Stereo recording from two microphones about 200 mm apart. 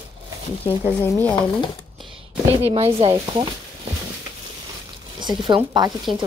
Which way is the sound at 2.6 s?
30° right (ahead or behind).